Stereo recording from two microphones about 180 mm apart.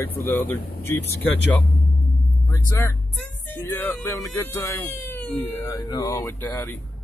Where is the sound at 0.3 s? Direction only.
10° left (ahead or behind).